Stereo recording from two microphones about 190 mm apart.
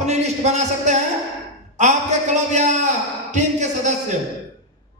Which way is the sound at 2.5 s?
40° right (ahead or behind).